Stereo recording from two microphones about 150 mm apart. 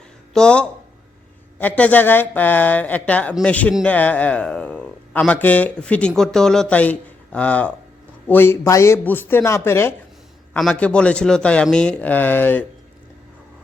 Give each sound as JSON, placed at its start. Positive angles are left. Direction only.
{"t": 0.3, "sound": "a man's voice", "side_deg": 5}
{"t": 10.6, "sound": "a man's voice", "side_deg": 5}